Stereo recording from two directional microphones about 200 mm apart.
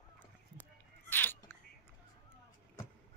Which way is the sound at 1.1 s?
10° left (ahead or behind).